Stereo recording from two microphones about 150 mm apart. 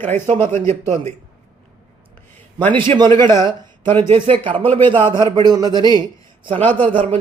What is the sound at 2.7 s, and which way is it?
A man's voice, 35° right (ahead or behind).